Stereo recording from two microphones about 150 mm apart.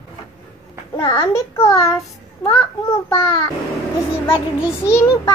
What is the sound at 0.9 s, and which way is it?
A child's voice, 30° left (ahead or behind).